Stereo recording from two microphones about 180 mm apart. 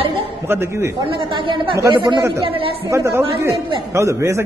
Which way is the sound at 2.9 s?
15° right (ahead or behind).